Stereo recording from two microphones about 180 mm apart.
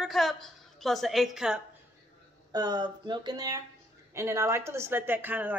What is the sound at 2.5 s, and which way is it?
Speech, 20° right (ahead or behind).